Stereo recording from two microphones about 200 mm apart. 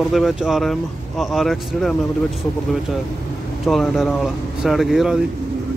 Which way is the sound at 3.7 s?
Centre (ahead or behind).